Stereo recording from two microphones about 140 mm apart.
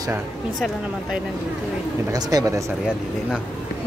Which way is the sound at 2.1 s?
25° right (ahead or behind).